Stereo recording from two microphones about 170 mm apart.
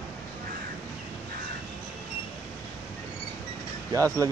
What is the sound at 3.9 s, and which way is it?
Speech, 15° right (ahead or behind).